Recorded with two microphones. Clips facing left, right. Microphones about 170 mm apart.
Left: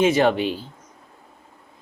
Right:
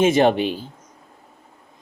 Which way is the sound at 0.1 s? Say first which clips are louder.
Right 2 dB; 20° right (ahead or behind).